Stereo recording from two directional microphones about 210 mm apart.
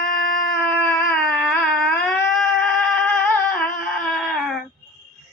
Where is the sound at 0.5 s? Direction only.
10° left (ahead or behind).